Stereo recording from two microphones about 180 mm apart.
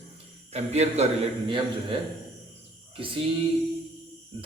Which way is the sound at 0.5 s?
35° right (ahead or behind).